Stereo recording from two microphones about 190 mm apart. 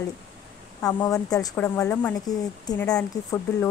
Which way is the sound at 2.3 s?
20° left (ahead or behind).